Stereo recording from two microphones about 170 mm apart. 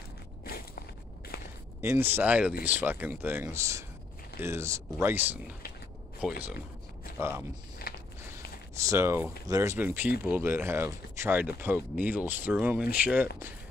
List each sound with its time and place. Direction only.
0.5 s walk: 60° left (ahead or behind)
1.8 s speech: 15° right (ahead or behind)
7.9 s walk: 65° left (ahead or behind)
8.8 s speech: 15° right (ahead or behind)